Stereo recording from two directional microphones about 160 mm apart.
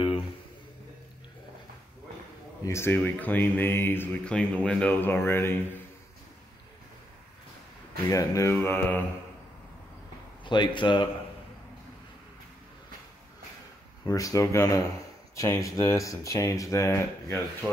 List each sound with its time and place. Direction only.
2.6 s speech: 15° left (ahead or behind)
8.1 s speech: 20° left (ahead or behind)
10.4 s speech: 30° left (ahead or behind)
14.0 s speech: 20° left (ahead or behind)